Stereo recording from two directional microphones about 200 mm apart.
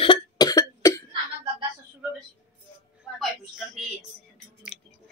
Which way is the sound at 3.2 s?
Centre (ahead or behind).